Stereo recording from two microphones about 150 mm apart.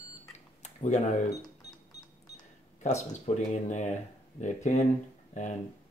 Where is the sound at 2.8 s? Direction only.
50° left (ahead or behind).